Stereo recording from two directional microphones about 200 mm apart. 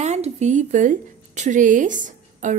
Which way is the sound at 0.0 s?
35° right (ahead or behind).